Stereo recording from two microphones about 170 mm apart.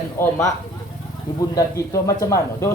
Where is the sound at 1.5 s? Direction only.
20° left (ahead or behind).